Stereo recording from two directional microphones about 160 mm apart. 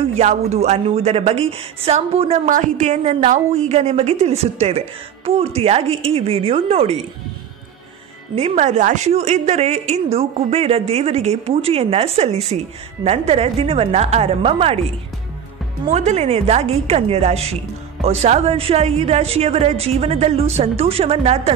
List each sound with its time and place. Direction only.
0.0 s a woman's voice: 45° right (ahead or behind)
2.5 s a woman's voice: 50° right (ahead or behind)
8.4 s a woman's voice: 40° right (ahead or behind)
15.9 s a woman's voice: 45° right (ahead or behind)